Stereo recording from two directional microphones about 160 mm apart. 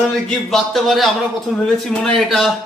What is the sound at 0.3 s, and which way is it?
Speech, centre (ahead or behind).